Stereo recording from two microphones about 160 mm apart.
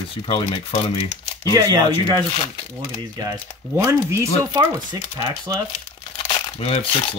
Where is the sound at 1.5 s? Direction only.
25° right (ahead or behind).